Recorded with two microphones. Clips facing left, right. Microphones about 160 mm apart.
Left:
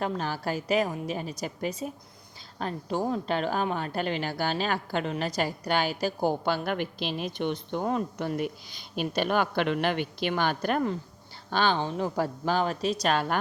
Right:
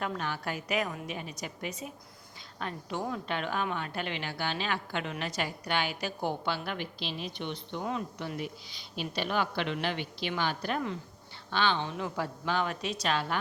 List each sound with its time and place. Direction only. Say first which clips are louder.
0.0 s a woman's voice: left 4 dB; 35° left (ahead or behind)